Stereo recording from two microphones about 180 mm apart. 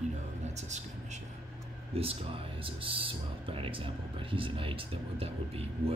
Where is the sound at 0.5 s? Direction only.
40° right (ahead or behind).